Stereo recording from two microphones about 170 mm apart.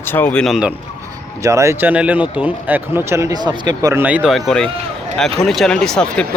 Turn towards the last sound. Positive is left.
turn(degrees=5)  # may be behind; listen again after turning